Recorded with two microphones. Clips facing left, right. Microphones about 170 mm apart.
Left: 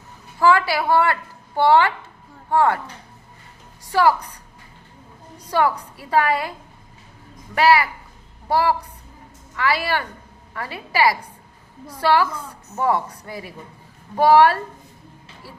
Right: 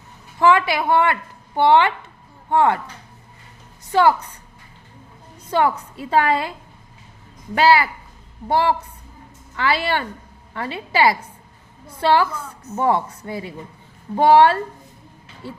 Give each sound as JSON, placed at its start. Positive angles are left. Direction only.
{"t": 0.3, "sound": "a woman's voice", "side_deg": -20}
{"t": 3.9, "sound": "a woman's voice", "side_deg": -25}
{"t": 5.5, "sound": "a woman's voice", "side_deg": -25}
{"t": 7.5, "sound": "a woman's voice", "side_deg": -25}